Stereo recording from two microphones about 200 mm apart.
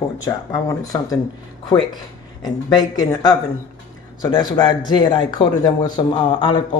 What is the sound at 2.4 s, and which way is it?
A man's voice, 20° left (ahead or behind).